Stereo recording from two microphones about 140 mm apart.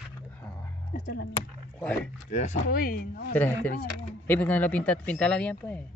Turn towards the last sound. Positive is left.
turn(degrees=10)  # may be behind; listen again after turning